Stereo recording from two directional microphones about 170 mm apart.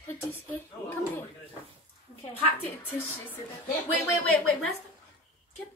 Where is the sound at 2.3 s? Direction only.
10° left (ahead or behind).